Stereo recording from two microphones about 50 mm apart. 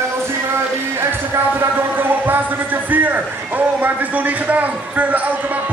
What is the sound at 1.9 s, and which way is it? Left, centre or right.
A man's voice, right.